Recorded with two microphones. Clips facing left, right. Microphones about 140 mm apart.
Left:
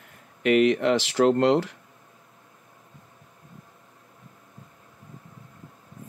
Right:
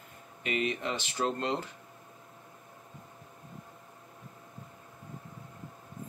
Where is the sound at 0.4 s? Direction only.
90° left.